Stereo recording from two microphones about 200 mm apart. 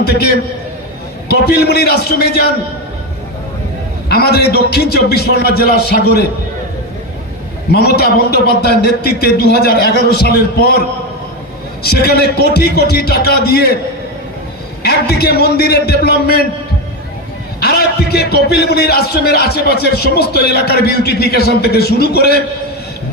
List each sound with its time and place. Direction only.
0.0 s speech: 55° left (ahead or behind)
1.5 s speech: 55° left (ahead or behind)
4.1 s speech: 50° left (ahead or behind)
7.7 s speech: 55° left (ahead or behind)
11.9 s speech: 50° left (ahead or behind)
14.8 s speech: 55° left (ahead or behind)
17.6 s speech: 50° left (ahead or behind)